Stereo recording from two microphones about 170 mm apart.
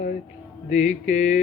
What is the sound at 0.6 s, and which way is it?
Mantra, 45° left (ahead or behind).